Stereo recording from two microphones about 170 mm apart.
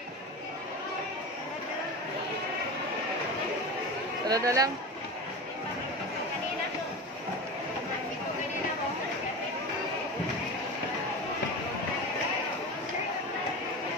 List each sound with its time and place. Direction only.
4.3 s speech: 20° right (ahead or behind)